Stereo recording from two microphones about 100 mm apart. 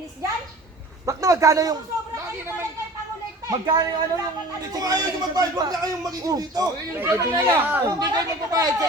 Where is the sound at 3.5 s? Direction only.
40° right (ahead or behind).